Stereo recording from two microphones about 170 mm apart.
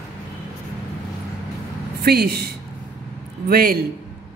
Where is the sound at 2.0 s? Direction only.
65° right (ahead or behind).